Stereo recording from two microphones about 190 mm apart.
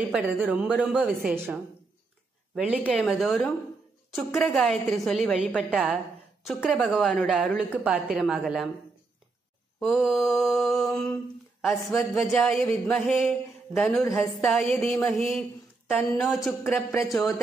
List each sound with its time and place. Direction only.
0.1 s a woman's voice: 5° right (ahead or behind)
9.8 s a woman's voice: centre (ahead or behind)
12.3 s a woman's voice: centre (ahead or behind)
14.0 s a woman's voice: 15° left (ahead or behind)
14.4 s a woman's voice: centre (ahead or behind)